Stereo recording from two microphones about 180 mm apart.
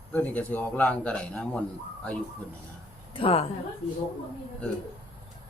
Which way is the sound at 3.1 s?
30° left (ahead or behind).